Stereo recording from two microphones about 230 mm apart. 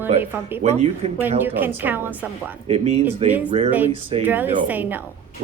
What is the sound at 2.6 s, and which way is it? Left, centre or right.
Speech, right.